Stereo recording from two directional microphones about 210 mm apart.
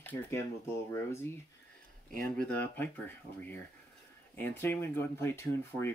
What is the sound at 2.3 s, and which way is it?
Speech, 10° left (ahead or behind).